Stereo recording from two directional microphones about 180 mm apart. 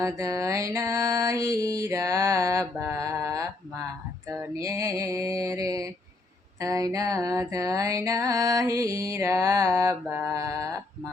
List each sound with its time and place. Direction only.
0.0 s music: 15° right (ahead or behind)